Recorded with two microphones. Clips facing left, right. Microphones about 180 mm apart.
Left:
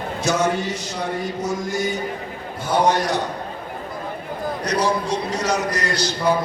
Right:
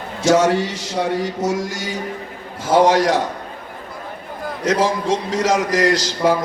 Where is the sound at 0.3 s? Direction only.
90° right.